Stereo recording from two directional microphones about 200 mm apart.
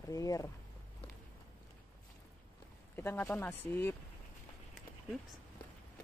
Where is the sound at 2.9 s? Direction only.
10° left (ahead or behind).